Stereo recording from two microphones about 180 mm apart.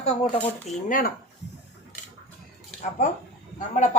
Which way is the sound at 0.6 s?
50° left (ahead or behind).